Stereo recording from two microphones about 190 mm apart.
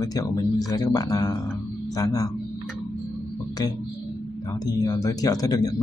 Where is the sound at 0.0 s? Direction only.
20° left (ahead or behind).